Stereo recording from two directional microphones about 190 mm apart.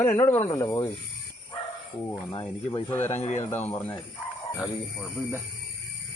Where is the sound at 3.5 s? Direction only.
10° left (ahead or behind).